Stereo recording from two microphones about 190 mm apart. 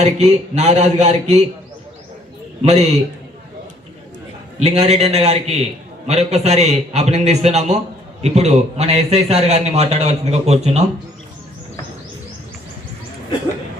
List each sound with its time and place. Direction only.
0.0 s a man's voice: 35° right (ahead or behind)
2.6 s a man's voice: 35° right (ahead or behind)
4.6 s a man's voice: 35° right (ahead or behind)